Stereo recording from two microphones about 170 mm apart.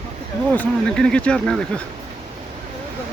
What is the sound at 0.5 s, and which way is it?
Speech, 5° left (ahead or behind).